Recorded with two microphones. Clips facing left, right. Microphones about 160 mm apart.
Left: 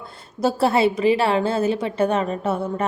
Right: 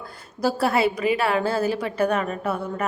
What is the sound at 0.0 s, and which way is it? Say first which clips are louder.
A woman's voice: left 2 dB; 25° left (ahead or behind).